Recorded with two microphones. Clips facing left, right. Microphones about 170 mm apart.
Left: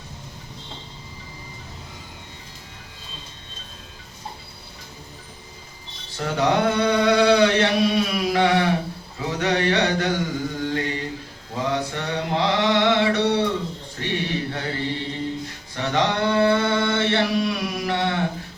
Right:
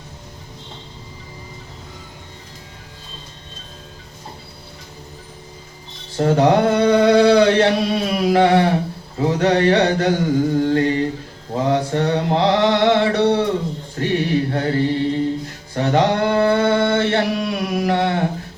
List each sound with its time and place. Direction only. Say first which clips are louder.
6.1 s mantra: right 7 dB; 40° right (ahead or behind)